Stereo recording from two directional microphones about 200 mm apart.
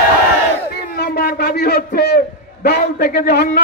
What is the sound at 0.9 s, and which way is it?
A man's voice, 50° left (ahead or behind).